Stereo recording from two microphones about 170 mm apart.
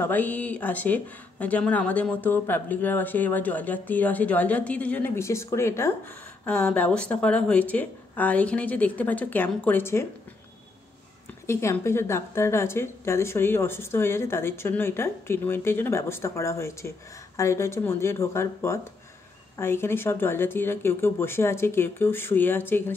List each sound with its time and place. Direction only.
0.0 s speech: 10° left (ahead or behind)
11.4 s speech: 15° left (ahead or behind)